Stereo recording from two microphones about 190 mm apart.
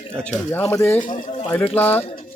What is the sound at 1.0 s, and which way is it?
Speech, 45° left (ahead or behind).